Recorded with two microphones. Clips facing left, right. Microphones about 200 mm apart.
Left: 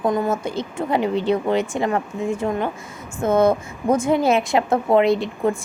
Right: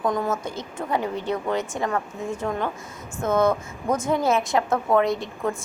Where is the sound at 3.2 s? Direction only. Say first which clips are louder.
Left 4 dB; 30° left (ahead or behind).